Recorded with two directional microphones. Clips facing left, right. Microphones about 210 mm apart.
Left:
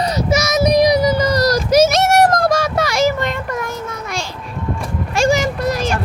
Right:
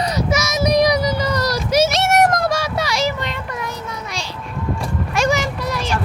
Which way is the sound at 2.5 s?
50° left (ahead or behind).